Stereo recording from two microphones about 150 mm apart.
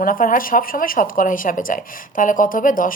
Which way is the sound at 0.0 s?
65° left (ahead or behind).